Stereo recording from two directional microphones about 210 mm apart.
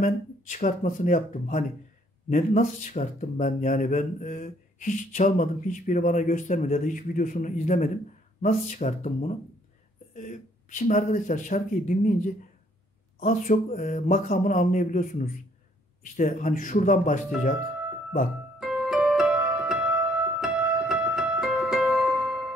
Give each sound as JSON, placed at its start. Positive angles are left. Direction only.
{"t": 0.0, "sound": "speech", "side_deg": 40}
{"t": 13.2, "sound": "speech", "side_deg": 40}
{"t": 18.6, "sound": "music", "side_deg": -5}